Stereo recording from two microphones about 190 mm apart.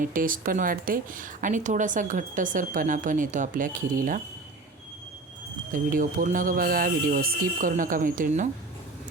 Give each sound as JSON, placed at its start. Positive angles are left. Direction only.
{"t": 0.0, "sound": "speech", "side_deg": -45}
{"t": 5.7, "sound": "speech", "side_deg": -45}